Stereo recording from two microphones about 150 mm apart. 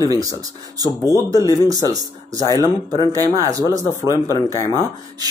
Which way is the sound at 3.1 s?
25° right (ahead or behind).